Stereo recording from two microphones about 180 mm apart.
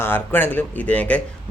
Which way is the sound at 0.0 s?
10° left (ahead or behind).